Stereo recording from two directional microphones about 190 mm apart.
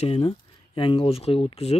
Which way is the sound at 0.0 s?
30° left (ahead or behind).